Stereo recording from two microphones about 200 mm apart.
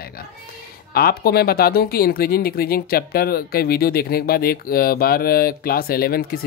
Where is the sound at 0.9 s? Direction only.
50° left (ahead or behind).